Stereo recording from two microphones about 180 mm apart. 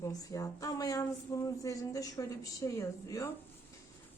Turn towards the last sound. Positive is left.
turn(degrees=15)  # may be behind; listen again after turning